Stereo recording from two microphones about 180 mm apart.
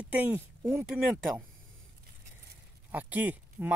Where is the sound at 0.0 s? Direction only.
10° right (ahead or behind).